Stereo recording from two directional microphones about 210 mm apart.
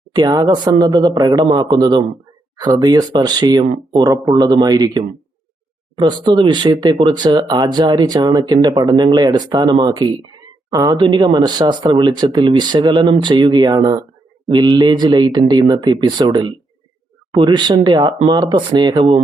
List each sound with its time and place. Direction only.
0.1 s speech: 20° right (ahead or behind)